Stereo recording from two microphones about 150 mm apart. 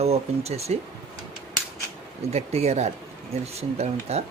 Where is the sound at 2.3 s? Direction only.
45° right (ahead or behind).